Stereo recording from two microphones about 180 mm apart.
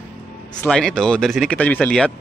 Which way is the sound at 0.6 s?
5° left (ahead or behind).